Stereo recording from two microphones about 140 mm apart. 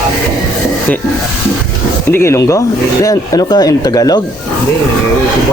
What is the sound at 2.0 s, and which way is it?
Speech, 15° left (ahead or behind).